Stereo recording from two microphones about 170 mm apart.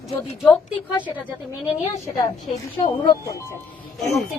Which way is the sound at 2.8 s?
30° left (ahead or behind).